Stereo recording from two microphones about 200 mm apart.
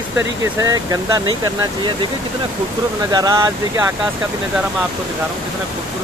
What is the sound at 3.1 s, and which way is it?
Speech, 15° right (ahead or behind).